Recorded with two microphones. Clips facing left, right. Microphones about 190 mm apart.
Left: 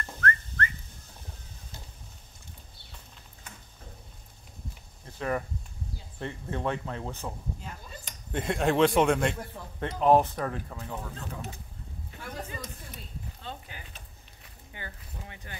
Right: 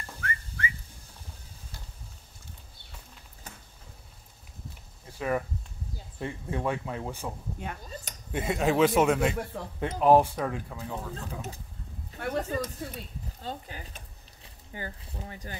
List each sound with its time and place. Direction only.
0.0 s whistling: 10° right (ahead or behind)
6.1 s speech: 10° right (ahead or behind)
7.6 s speech: 60° right (ahead or behind)
8.3 s a man's voice: 5° right (ahead or behind)
12.2 s a sound: 70° right (ahead or behind)
13.4 s speech: 40° right (ahead or behind)